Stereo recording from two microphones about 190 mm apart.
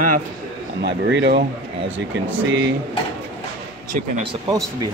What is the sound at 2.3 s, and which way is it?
Speech, 90° right.